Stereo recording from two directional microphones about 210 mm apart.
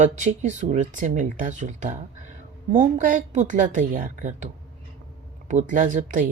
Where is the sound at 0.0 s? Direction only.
35° right (ahead or behind).